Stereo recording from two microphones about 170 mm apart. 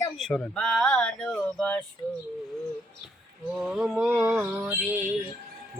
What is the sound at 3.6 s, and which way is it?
Speech, 5° right (ahead or behind).